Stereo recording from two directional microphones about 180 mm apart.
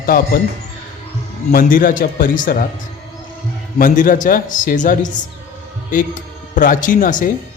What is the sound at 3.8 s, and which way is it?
Speech, 45° left (ahead or behind).